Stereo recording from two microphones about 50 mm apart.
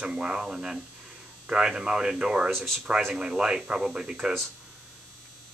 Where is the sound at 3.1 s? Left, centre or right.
Centre.